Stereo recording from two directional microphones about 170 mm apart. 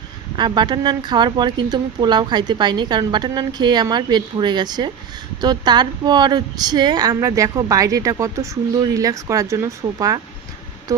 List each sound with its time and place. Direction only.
0.3 s a woman's voice: 25° right (ahead or behind)